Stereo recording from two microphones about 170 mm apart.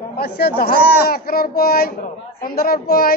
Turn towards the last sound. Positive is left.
turn(degrees=60)  # may be behind; listen again after turning